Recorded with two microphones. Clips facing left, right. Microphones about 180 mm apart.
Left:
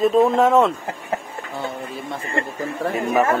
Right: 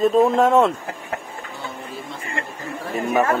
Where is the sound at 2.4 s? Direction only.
35° left (ahead or behind).